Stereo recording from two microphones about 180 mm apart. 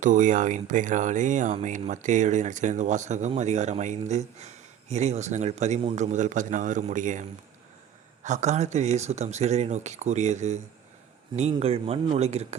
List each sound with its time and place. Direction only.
0.0 s speech: 45° right (ahead or behind)